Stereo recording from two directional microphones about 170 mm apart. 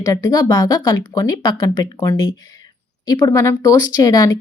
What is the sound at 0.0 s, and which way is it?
Speech, 20° left (ahead or behind).